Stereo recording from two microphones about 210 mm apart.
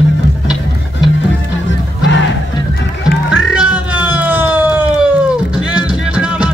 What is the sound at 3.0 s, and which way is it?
Music, 5° right (ahead or behind).